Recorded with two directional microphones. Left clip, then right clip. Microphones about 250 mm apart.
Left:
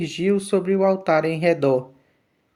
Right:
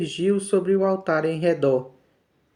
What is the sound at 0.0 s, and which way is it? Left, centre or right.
Speech, left.